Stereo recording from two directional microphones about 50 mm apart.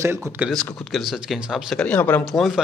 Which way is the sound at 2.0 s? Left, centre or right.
Left.